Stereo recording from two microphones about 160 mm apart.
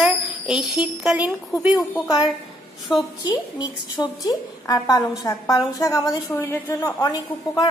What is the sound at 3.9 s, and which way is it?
A woman's voice, 20° left (ahead or behind).